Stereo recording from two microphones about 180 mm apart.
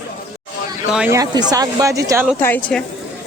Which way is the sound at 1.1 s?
20° right (ahead or behind).